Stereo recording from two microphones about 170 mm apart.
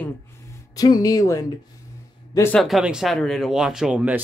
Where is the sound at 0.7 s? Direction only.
20° left (ahead or behind).